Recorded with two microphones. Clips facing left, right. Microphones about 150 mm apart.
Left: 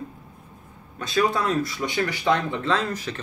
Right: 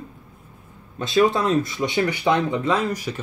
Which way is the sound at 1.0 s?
25° right (ahead or behind).